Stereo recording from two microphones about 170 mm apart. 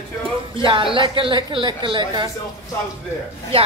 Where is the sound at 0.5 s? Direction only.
30° right (ahead or behind).